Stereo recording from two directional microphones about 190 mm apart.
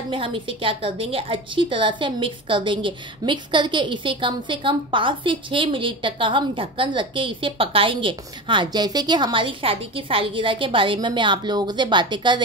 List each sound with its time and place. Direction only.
0.1 s a woman's voice: 25° right (ahead or behind)